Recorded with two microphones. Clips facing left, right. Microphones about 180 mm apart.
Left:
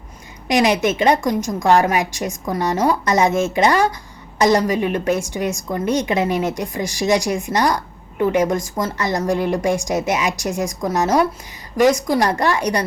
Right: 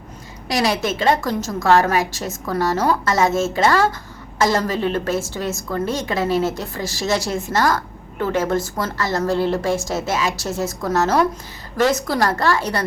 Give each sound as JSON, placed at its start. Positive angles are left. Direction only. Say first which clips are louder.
{"t": 0.4, "sound": "a woman's voice", "louder": "left 4 dB", "side_deg": 20}